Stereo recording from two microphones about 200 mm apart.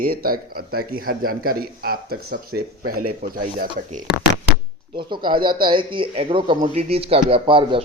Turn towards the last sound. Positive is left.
turn(degrees=-25)  # may be behind; listen again after turning